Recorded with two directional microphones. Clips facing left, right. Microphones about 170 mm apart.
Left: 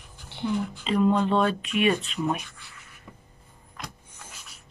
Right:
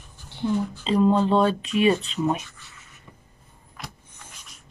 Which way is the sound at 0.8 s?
30° right (ahead or behind).